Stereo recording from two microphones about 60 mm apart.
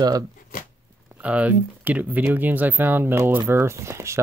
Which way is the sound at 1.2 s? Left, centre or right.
Right.